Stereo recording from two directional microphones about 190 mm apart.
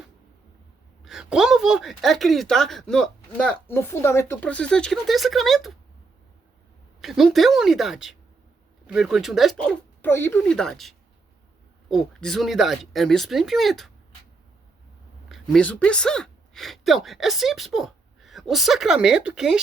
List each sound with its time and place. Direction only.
1.0 s speech: 5° right (ahead or behind)
7.0 s speech: centre (ahead or behind)
15.3 s speech: 5° left (ahead or behind)